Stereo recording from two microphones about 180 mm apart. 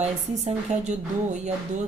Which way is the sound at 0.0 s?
40° right (ahead or behind).